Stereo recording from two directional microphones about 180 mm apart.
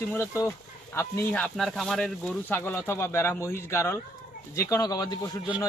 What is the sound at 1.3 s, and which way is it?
Speech, 5° left (ahead or behind).